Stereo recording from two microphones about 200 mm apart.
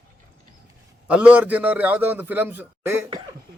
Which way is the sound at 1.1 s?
5° right (ahead or behind).